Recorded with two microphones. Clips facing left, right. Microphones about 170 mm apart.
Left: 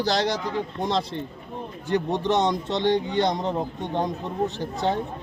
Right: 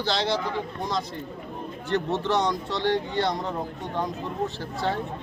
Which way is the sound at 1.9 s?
15° left (ahead or behind).